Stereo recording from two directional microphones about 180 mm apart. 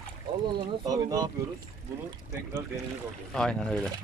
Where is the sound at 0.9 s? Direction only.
20° right (ahead or behind).